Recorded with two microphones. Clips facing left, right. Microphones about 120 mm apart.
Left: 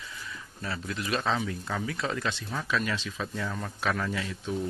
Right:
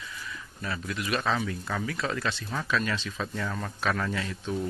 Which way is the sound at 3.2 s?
Centre (ahead or behind).